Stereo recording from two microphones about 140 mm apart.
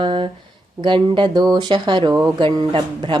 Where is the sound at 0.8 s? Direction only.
35° right (ahead or behind).